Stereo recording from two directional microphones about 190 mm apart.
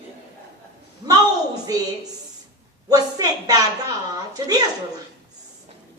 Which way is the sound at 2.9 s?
20° right (ahead or behind).